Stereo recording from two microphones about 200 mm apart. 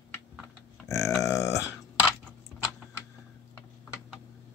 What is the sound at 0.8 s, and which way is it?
Speech, 15° left (ahead or behind).